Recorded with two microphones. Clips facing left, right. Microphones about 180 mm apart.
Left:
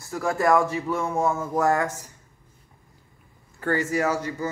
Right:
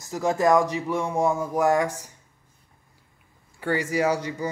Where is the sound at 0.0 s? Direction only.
20° right (ahead or behind).